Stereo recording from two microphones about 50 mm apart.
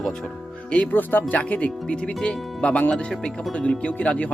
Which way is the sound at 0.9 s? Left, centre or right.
Left.